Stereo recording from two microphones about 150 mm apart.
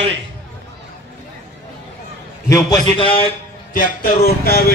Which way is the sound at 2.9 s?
35° left (ahead or behind).